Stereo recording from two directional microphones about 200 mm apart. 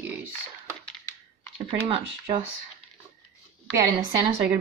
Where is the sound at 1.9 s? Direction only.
30° right (ahead or behind).